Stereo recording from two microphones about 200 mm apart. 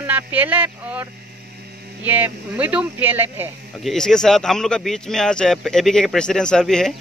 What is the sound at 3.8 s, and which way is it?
Speech, 5° left (ahead or behind).